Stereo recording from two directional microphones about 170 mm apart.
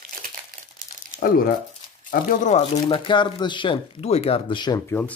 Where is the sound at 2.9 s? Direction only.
30° left (ahead or behind).